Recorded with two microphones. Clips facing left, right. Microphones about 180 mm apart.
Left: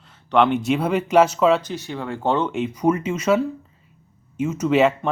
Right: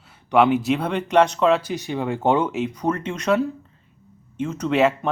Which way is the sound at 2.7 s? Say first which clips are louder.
Left 4 dB; 10° left (ahead or behind).